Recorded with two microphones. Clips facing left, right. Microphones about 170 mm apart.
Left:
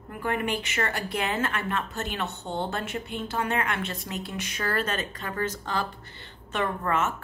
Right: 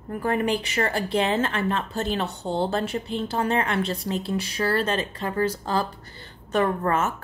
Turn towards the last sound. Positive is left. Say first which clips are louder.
# right 3 dB
turn(degrees=-40)  # may be behind; listen again after turning